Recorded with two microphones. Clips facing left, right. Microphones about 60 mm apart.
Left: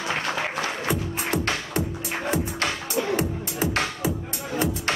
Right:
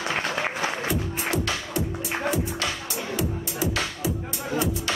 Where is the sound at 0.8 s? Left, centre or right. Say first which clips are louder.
Left 1 dB; left.